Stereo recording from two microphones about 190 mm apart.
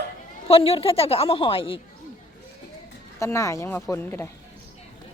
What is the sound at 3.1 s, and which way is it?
Speech, 15° left (ahead or behind).